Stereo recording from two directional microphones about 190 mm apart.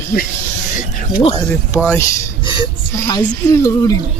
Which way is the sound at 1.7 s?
15° left (ahead or behind).